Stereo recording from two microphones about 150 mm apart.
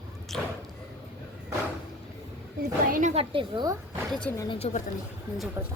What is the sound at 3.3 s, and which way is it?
Speech, 30° right (ahead or behind).